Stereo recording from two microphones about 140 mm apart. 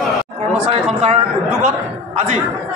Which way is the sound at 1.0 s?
50° right (ahead or behind).